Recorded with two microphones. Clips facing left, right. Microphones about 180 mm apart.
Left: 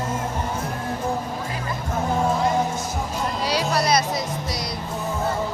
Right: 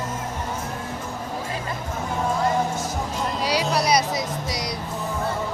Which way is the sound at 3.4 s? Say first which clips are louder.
Even; 10° right (ahead or behind).